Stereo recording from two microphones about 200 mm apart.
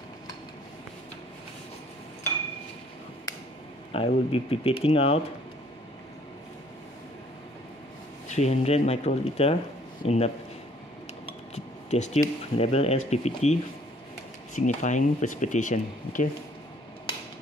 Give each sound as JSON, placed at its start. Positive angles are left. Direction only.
{"t": 3.9, "sound": "speech", "side_deg": 30}
{"t": 8.3, "sound": "speech", "side_deg": 35}
{"t": 11.5, "sound": "speech", "side_deg": 35}